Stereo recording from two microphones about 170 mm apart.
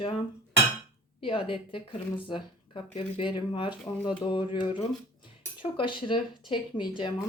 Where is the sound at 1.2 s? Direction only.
30° left (ahead or behind).